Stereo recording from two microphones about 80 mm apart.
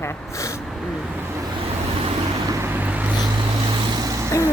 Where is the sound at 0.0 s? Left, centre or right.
Left.